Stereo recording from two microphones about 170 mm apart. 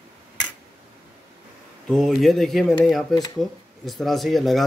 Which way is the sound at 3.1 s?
20° left (ahead or behind).